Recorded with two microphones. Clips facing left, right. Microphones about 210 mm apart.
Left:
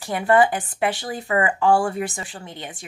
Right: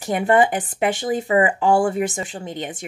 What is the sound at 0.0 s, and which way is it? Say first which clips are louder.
Speech: right 1 dB; 20° right (ahead or behind).